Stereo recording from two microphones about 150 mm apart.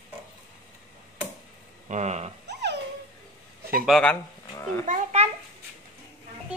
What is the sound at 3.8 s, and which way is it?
Speech, centre (ahead or behind).